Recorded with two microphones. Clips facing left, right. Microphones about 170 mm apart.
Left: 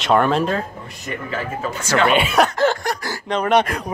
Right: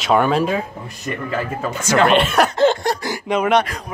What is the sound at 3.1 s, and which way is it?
Speech, 5° right (ahead or behind).